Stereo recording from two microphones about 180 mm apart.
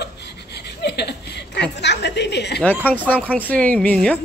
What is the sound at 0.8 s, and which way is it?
Chuckle, 70° left (ahead or behind).